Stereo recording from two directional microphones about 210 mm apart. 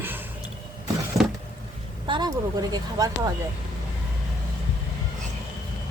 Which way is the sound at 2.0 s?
20° right (ahead or behind).